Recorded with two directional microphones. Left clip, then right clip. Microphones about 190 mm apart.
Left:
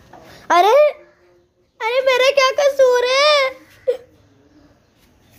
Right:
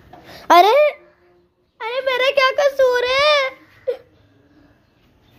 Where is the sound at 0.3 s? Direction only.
30° right (ahead or behind).